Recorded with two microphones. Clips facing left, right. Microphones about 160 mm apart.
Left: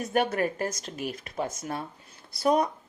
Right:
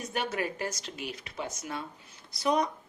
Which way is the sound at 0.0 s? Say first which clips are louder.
Left 6 dB; 50° left (ahead or behind).